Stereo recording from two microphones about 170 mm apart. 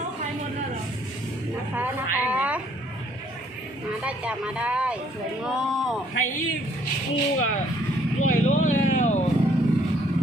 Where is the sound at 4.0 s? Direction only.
5° right (ahead or behind).